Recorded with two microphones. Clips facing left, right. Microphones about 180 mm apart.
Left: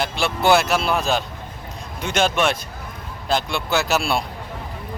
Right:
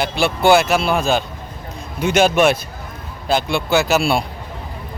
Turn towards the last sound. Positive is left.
turn(degrees=0)  # may be behind; listen again after turning